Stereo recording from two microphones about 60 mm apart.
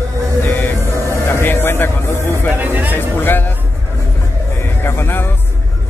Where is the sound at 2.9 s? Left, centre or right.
Left.